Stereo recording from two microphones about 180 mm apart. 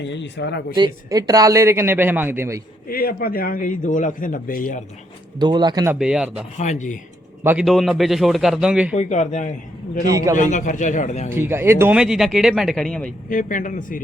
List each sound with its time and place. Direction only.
0.0 s speech: 80° left
0.8 s speech: 20° right (ahead or behind)
2.9 s a man's voice: 55° left (ahead or behind)
5.4 s speech: 25° right (ahead or behind)
6.0 s speech: 5° right (ahead or behind)
6.6 s a man's voice: 40° left (ahead or behind)
7.4 s speech: 5° right (ahead or behind)
8.9 s a man's voice: 45° left (ahead or behind)
10.1 s speech: 20° right (ahead or behind)
10.3 s a man's voice: 45° left (ahead or behind)
11.3 s speech: 15° right (ahead or behind); by 13.1 s 5° left (ahead or behind)
13.3 s a man's voice: 45° left (ahead or behind)